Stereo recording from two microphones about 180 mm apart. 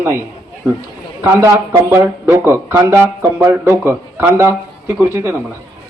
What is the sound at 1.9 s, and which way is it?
A man's voice, 15° right (ahead or behind).